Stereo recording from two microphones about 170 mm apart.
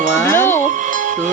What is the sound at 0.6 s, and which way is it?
Music, 50° right (ahead or behind).